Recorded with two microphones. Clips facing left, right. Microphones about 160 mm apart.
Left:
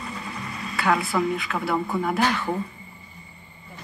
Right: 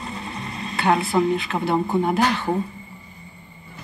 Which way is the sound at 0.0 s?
25° right (ahead or behind).